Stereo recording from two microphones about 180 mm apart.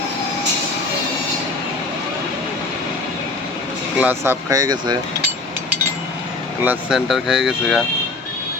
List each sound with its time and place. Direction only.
3.9 s speech: 10° right (ahead or behind)
6.7 s speech: 5° right (ahead or behind)